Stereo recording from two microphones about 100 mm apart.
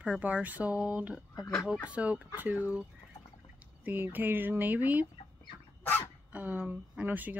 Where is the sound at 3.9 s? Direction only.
20° right (ahead or behind).